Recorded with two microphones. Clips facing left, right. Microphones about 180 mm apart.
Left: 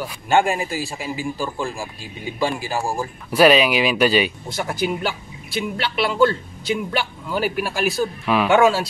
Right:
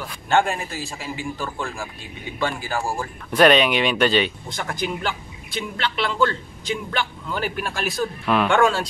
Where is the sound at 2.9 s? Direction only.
5° left (ahead or behind).